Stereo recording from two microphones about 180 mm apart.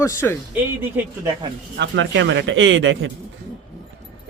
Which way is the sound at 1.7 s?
85° right.